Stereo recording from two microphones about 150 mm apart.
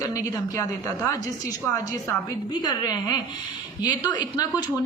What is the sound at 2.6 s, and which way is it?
Speech, 25° left (ahead or behind).